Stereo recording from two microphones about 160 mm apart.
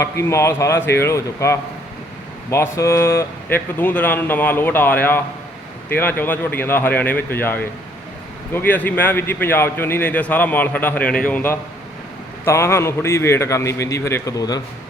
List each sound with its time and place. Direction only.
0.0 s speech: 15° left (ahead or behind)